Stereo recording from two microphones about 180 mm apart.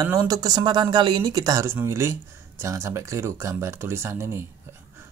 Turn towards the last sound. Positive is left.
turn(degrees=-15)  # may be behind; listen again after turning